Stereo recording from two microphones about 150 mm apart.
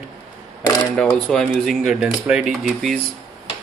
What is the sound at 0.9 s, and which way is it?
Speech, 5° left (ahead or behind).